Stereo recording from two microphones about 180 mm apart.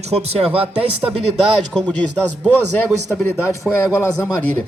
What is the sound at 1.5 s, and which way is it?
Speech, 5° left (ahead or behind).